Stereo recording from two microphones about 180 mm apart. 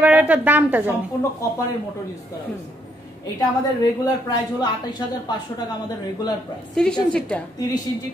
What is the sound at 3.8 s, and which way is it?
Speech, 20° left (ahead or behind).